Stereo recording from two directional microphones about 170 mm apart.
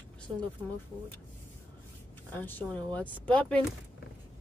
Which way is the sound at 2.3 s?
10° left (ahead or behind).